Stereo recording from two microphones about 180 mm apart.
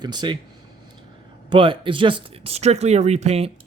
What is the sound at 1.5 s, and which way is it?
Speech, 30° right (ahead or behind).